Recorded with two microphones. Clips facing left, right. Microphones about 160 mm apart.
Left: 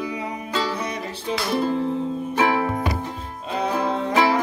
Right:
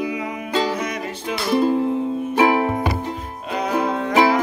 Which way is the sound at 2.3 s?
15° right (ahead or behind).